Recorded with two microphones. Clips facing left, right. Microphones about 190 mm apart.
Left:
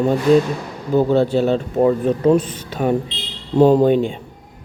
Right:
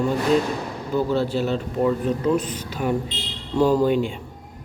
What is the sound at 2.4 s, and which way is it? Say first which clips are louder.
Speech: left 5 dB; 35° left (ahead or behind).